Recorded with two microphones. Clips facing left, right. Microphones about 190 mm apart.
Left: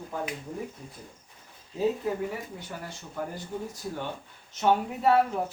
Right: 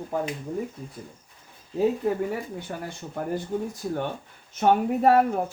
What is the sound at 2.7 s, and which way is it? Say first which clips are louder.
Speech: right 3 dB; 55° right (ahead or behind).